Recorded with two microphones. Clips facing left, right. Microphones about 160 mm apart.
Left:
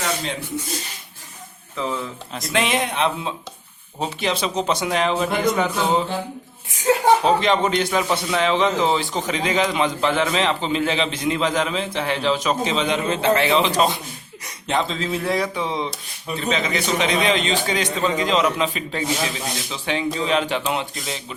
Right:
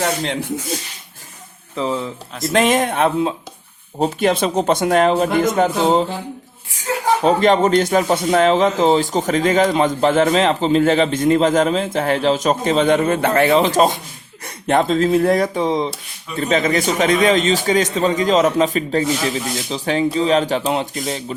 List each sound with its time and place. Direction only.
0.0 s speech: 70° right (ahead or behind)
1.7 s speech: 30° right (ahead or behind)
2.5 s speech: 45° right (ahead or behind)
7.3 s a man's voice: 45° right (ahead or behind)